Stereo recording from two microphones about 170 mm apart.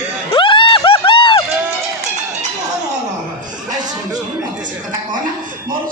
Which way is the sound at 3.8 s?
20° right (ahead or behind).